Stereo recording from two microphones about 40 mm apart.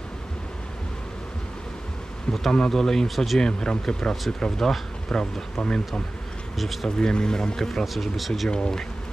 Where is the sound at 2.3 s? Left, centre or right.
Centre.